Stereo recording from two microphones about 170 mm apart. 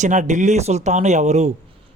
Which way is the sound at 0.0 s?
45° right (ahead or behind).